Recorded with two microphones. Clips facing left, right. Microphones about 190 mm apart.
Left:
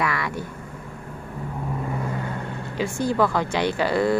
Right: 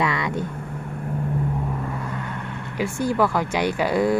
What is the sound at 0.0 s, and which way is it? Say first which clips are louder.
Vehicle: right 2 dB; 20° right (ahead or behind).